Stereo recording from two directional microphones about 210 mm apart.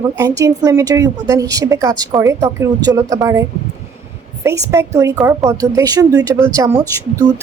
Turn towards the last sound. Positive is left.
turn(degrees=-15)  # may be behind; listen again after turning